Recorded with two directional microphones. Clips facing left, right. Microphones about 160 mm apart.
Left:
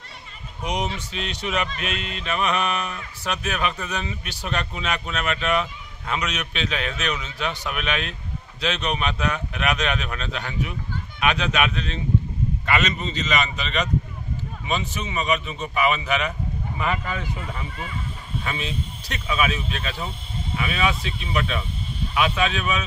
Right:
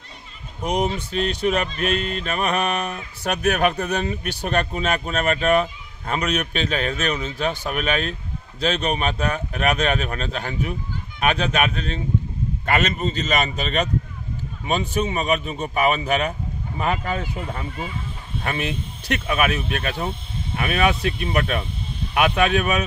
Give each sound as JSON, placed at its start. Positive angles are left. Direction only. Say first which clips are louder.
{"t": 0.7, "sound": "speech", "louder": "right 5 dB", "side_deg": -55}
{"t": 18.4, "sound": "speech", "louder": "right 4 dB", "side_deg": -55}